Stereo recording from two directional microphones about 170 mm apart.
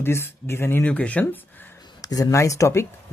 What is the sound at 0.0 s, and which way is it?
Speech, 15° left (ahead or behind).